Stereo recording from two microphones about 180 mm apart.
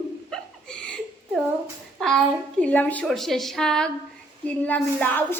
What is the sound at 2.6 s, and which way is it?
A woman's voice, 10° left (ahead or behind).